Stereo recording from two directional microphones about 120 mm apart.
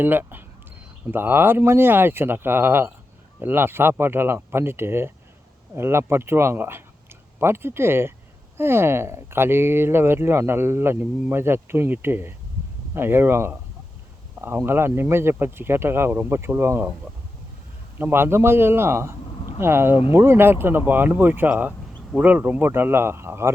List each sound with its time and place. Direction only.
0.0 s speech: 15° right (ahead or behind)
18.0 s speech: 20° right (ahead or behind)